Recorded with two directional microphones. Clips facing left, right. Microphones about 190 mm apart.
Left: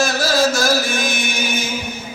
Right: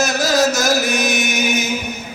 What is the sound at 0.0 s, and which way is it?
Chant, 20° right (ahead or behind).